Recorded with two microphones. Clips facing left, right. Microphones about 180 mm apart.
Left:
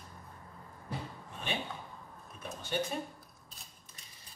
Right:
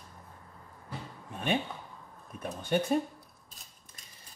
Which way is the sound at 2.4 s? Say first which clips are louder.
Right 6 dB; 50° right (ahead or behind).